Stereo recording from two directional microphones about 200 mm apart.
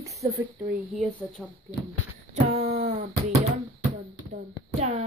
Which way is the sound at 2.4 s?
35° right (ahead or behind).